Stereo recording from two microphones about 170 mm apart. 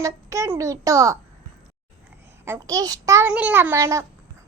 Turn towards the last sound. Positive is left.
turn(degrees=-15)  # may be behind; listen again after turning